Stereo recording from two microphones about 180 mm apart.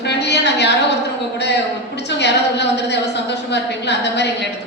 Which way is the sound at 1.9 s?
70° left (ahead or behind).